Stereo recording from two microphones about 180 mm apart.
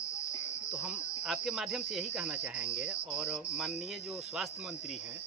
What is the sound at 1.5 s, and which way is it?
Speech, 5° right (ahead or behind).